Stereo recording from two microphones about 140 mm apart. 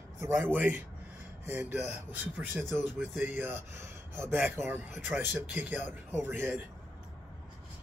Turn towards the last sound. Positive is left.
turn(degrees=-15)  # may be behind; listen again after turning